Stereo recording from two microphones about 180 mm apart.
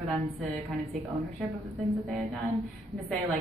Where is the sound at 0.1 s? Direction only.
Centre (ahead or behind).